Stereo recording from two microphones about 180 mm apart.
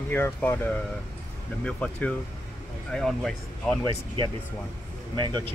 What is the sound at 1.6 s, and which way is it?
Speech, 5° left (ahead or behind).